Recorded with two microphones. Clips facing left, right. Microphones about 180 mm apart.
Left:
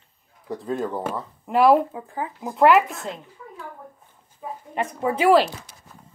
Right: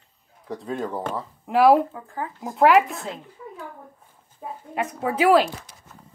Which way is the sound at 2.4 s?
Centre (ahead or behind).